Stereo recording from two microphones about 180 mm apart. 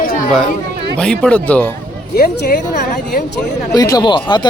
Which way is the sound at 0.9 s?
5° left (ahead or behind).